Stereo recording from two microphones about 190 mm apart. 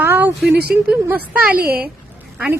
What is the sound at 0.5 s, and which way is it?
Speech, 55° right (ahead or behind).